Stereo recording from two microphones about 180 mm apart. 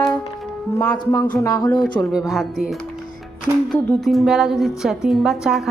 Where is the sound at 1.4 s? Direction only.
20° left (ahead or behind).